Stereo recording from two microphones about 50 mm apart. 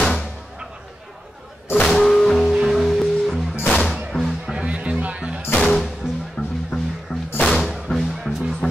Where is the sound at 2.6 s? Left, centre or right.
Centre.